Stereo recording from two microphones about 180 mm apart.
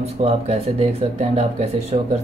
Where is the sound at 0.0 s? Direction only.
35° right (ahead or behind).